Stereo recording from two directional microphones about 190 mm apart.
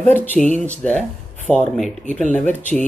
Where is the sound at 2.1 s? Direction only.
40° left (ahead or behind).